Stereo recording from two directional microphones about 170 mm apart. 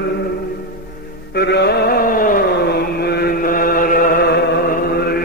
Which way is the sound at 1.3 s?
70° left (ahead or behind).